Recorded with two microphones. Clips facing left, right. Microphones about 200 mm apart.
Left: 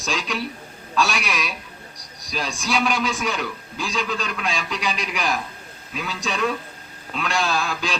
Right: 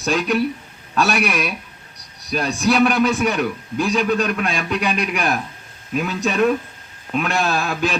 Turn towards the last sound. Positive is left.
turn(degrees=-60)  # may be behind; listen again after turning